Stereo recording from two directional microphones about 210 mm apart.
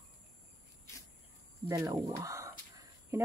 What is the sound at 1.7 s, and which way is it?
Speech, 15° right (ahead or behind).